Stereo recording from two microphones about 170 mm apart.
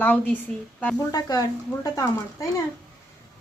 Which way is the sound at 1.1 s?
20° left (ahead or behind).